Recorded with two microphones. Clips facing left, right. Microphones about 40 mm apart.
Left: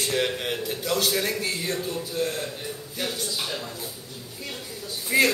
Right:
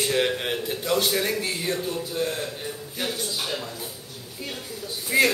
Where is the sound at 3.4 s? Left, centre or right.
Centre.